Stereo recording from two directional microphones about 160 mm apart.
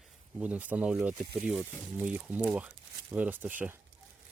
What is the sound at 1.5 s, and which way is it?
Speech, 5° right (ahead or behind).